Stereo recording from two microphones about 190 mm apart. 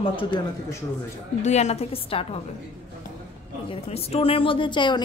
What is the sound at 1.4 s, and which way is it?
A woman's voice, 35° left (ahead or behind).